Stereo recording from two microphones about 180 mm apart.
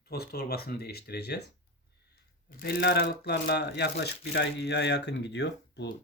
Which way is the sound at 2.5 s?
60° left (ahead or behind).